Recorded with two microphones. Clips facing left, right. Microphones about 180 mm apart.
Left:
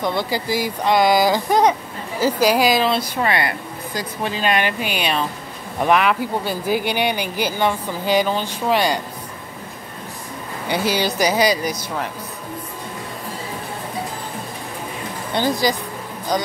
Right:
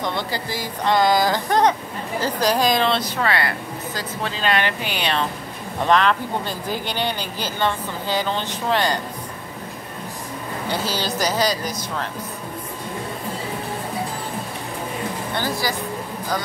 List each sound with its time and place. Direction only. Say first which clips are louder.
0.0 s speech: left 4 dB; 10° left (ahead or behind)
10.7 s speech: left 5 dB; 15° left (ahead or behind)
15.3 s speech: left 7 dB; 20° left (ahead or behind)